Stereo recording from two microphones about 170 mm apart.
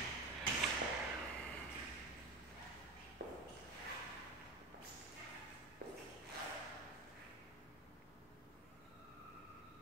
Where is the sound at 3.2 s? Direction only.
75° right (ahead or behind).